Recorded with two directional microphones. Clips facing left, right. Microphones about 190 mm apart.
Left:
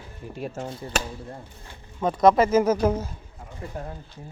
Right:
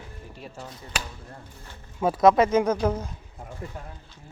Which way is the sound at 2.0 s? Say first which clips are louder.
Even; 5° right (ahead or behind).